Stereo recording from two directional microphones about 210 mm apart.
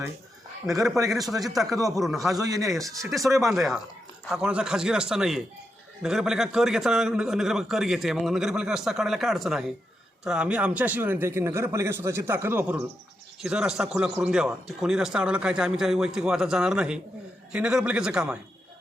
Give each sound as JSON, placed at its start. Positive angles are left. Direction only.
{"t": 1.2, "sound": "a man's voice", "side_deg": -15}
{"t": 2.0, "sound": "a man's voice", "side_deg": 0}
{"t": 2.3, "sound": "a man's voice", "side_deg": -15}
{"t": 3.4, "sound": "a man's voice", "side_deg": 0}